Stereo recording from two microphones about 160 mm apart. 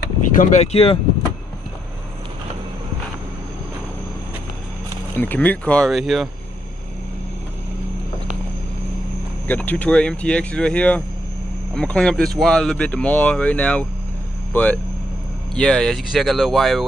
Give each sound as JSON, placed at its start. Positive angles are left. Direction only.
{"t": 0.3, "sound": "speech", "side_deg": 50}
{"t": 5.1, "sound": "speech", "side_deg": 10}
{"t": 9.5, "sound": "speech", "side_deg": 10}